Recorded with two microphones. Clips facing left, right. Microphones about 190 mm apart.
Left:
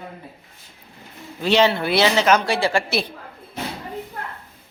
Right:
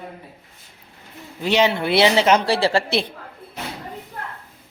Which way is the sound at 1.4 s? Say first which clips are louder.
Left 1 dB; 15° right (ahead or behind).